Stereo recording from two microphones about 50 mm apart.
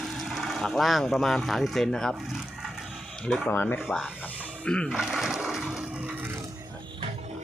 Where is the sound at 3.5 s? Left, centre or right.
Left.